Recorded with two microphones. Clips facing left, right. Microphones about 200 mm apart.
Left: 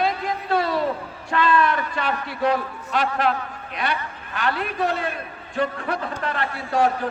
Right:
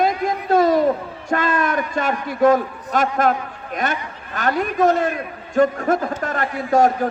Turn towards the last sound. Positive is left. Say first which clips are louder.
# right 5 dB
turn(degrees=-45)  # may be behind; listen again after turning